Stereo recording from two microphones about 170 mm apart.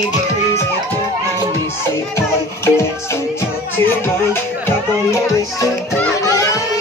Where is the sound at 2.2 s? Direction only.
15° left (ahead or behind).